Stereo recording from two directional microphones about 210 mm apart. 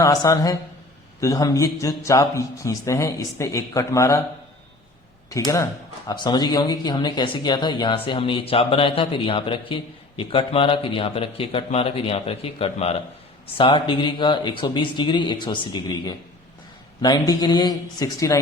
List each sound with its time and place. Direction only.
0.0 s speech: 15° left (ahead or behind)
6.1 s speech: 20° left (ahead or behind)